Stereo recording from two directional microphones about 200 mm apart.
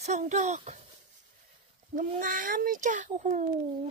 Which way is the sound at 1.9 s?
40° right (ahead or behind).